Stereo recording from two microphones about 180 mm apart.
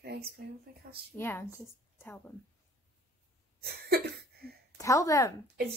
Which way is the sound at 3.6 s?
60° right (ahead or behind).